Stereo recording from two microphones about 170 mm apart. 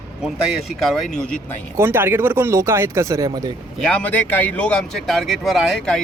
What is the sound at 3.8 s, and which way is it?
Speech, 5° left (ahead or behind).